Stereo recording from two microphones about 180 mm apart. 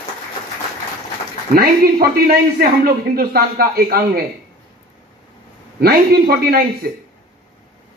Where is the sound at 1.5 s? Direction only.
60° right (ahead or behind).